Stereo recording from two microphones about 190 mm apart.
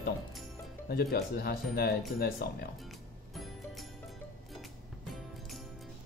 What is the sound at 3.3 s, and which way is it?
Music, centre (ahead or behind).